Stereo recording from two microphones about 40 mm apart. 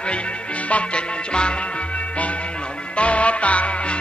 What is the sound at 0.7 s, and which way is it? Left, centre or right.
Music, left.